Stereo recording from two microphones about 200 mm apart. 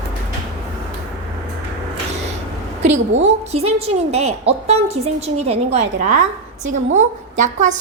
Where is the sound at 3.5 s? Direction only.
30° right (ahead or behind).